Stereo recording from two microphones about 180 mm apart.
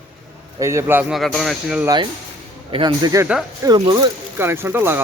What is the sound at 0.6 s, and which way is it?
Speech, 15° right (ahead or behind).